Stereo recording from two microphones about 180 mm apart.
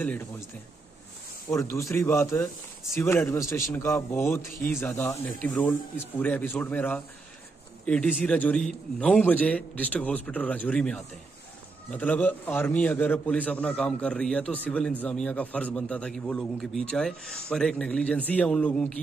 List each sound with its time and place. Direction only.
1.5 s a man's voice: 15° left (ahead or behind)